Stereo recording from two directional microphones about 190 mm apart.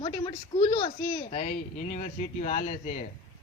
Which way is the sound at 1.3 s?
40° left (ahead or behind).